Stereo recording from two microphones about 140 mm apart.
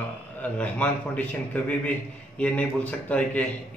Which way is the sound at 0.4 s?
10° left (ahead or behind).